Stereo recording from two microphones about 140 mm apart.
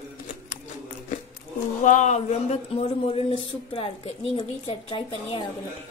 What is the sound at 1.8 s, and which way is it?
Speech, 65° left (ahead or behind).